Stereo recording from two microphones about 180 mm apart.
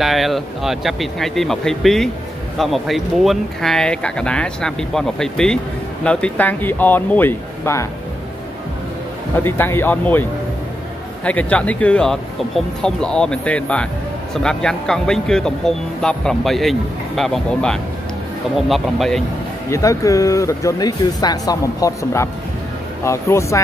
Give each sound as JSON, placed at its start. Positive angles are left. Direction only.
{"t": 0.0, "sound": "speech", "side_deg": 0}
{"t": 9.4, "sound": "speech", "side_deg": 10}
{"t": 11.2, "sound": "speech", "side_deg": 5}
{"t": 19.7, "sound": "speech", "side_deg": 15}